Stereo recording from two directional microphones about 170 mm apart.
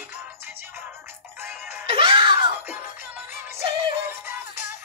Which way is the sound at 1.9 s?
30° right (ahead or behind).